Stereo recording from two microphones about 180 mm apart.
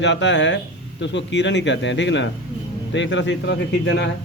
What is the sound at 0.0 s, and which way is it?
A man's voice, 85° left.